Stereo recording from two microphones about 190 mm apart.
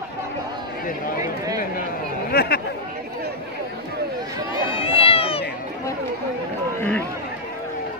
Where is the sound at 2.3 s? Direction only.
55° left (ahead or behind).